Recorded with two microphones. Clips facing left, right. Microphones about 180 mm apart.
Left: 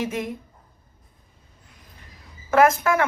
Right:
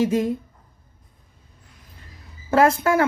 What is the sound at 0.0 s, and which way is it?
Speech, 30° right (ahead or behind).